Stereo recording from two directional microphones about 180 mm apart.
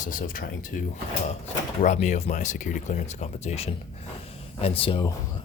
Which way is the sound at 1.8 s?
40° left (ahead or behind).